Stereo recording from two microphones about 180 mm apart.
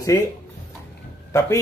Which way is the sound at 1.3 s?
15° left (ahead or behind).